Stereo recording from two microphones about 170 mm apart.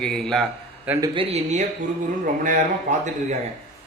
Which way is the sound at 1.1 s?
40° right (ahead or behind).